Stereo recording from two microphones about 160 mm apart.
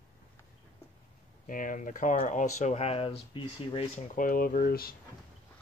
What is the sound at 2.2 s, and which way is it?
Speech, 50° left (ahead or behind).